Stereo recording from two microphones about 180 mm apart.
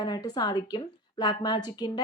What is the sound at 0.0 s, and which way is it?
Speech, 20° left (ahead or behind).